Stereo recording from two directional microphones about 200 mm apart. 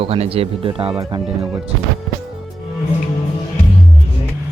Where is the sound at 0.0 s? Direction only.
30° right (ahead or behind).